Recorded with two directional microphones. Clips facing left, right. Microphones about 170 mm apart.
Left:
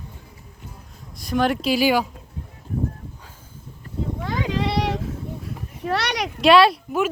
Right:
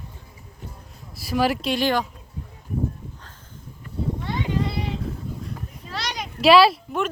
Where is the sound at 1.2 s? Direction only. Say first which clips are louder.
Left 1 dB; 5° right (ahead or behind).